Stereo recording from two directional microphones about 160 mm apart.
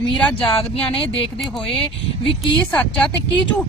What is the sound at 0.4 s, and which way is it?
Speech, 35° left (ahead or behind).